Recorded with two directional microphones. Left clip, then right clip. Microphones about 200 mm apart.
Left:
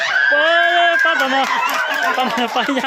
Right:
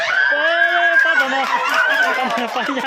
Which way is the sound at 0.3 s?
25° left (ahead or behind).